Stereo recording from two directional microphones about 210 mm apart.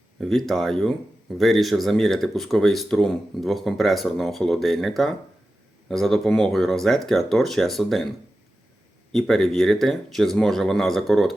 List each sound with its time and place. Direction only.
0.2 s speech: centre (ahead or behind)
9.1 s speech: centre (ahead or behind)